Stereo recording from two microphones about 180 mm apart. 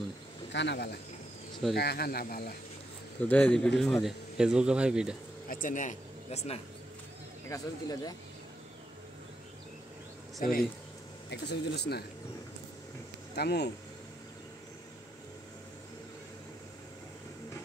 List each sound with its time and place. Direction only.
0.5 s speech: 75° left (ahead or behind); by 2.5 s 55° left (ahead or behind)
3.2 s speech: 5° left (ahead or behind)
5.5 s speech: 45° left (ahead or behind)
7.4 s speech: 20° left (ahead or behind)
10.4 s speech: 50° left (ahead or behind)
11.2 s speech: 70° left (ahead or behind)
13.4 s speech: 65° left (ahead or behind)